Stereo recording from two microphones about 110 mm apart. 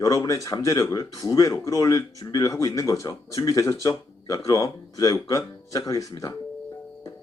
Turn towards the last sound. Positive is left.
turn(degrees=30)  # may be behind; listen again after turning